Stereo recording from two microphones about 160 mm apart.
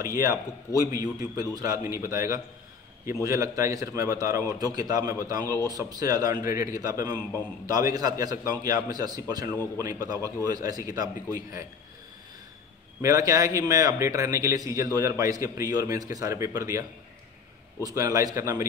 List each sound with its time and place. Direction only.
0.0 s a man's voice: 20° right (ahead or behind)
13.0 s a man's voice: 20° right (ahead or behind)
17.8 s a man's voice: 20° right (ahead or behind)